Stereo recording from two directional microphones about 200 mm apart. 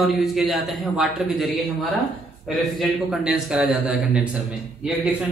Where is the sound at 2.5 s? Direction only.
Centre (ahead or behind).